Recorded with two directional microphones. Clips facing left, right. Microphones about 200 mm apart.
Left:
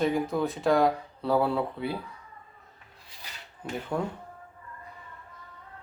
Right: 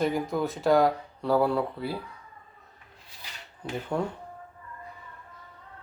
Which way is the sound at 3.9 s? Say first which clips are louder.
Right 1 dB; 5° left (ahead or behind).